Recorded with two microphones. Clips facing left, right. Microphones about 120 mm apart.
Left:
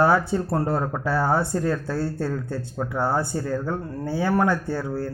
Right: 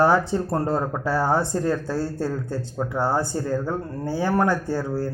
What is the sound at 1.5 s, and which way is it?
Speech, 20° right (ahead or behind).